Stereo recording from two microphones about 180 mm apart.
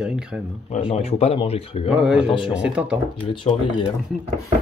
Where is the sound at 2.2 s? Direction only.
30° left (ahead or behind).